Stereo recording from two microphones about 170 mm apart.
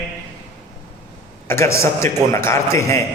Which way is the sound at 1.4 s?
15° left (ahead or behind).